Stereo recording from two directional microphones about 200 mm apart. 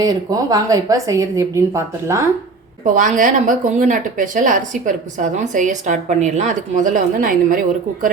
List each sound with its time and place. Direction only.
0.0 s a woman's voice: 20° right (ahead or behind)
2.8 s a woman's voice: 40° right (ahead or behind)